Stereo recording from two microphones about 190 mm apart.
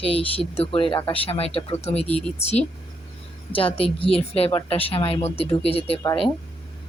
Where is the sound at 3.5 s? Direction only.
30° left (ahead or behind).